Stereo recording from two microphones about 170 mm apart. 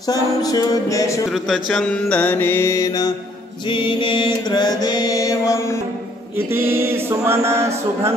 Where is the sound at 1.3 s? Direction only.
Centre (ahead or behind); by 5.8 s 15° left (ahead or behind).